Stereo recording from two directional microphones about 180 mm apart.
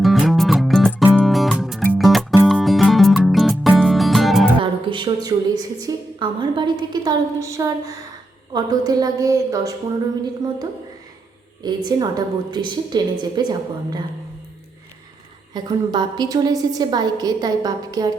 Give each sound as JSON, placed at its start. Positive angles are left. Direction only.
{"t": 0.0, "sound": "music", "side_deg": 0}
{"t": 4.6, "sound": "music", "side_deg": -25}
{"t": 5.8, "sound": "a woman's voice", "side_deg": -20}
{"t": 11.6, "sound": "a woman's voice", "side_deg": -20}
{"t": 15.5, "sound": "a woman's voice", "side_deg": -25}